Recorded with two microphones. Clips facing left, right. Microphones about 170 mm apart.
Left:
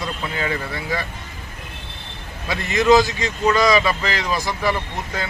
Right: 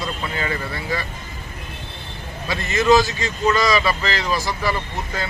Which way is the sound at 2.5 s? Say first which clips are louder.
Left 1 dB; 20° left (ahead or behind).